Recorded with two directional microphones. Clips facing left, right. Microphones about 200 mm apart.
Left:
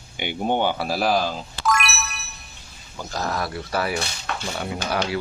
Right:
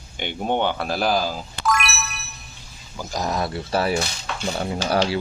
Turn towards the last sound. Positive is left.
turn(degrees=-30)  # may be behind; listen again after turning